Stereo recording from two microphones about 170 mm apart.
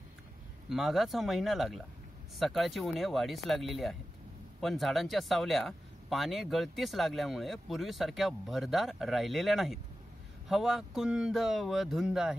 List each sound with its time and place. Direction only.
0.7 s speech: centre (ahead or behind)